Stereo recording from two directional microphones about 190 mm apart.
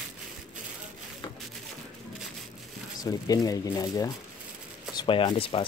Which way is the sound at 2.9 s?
20° left (ahead or behind).